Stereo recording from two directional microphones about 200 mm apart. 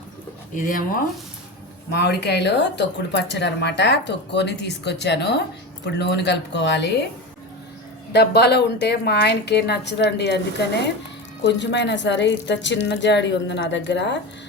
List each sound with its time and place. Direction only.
1.9 s speech: 55° left (ahead or behind)
8.1 s speech: 55° left (ahead or behind)